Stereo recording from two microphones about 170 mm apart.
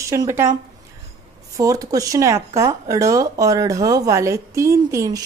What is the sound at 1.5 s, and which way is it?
Speech, 20° right (ahead or behind).